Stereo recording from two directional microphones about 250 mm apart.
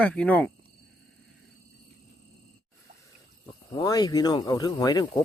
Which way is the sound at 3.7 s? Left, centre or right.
Centre.